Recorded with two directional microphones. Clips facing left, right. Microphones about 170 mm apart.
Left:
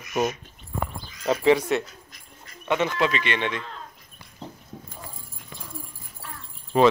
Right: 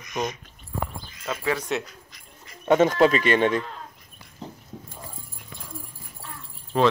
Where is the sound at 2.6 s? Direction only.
45° right (ahead or behind).